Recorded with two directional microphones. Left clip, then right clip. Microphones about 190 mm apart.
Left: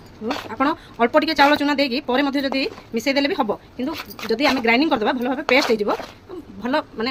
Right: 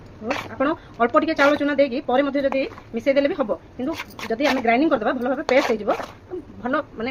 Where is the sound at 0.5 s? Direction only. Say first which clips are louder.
Left 3 dB; 65° left (ahead or behind).